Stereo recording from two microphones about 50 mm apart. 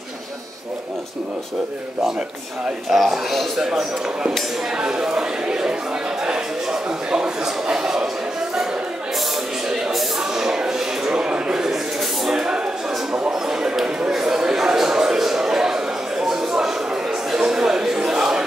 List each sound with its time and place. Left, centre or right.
2.9 s a man's voice: centre
4.7 s speech: centre
10.3 s speech: centre
14.1 s a sound: centre